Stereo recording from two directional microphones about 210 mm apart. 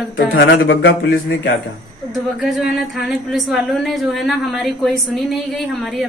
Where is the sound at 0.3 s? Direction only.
55° left (ahead or behind).